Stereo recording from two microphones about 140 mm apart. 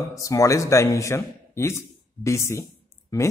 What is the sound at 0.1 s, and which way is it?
A man's voice, 25° left (ahead or behind).